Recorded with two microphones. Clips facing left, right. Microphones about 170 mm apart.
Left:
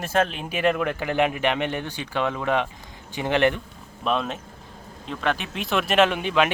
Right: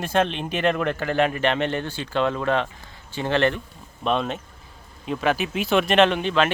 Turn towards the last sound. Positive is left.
turn(degrees=10)  # may be behind; listen again after turning